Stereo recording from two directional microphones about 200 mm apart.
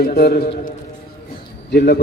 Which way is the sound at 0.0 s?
50° left (ahead or behind).